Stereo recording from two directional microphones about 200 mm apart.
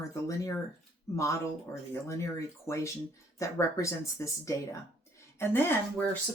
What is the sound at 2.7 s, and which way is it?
Speech, 15° left (ahead or behind).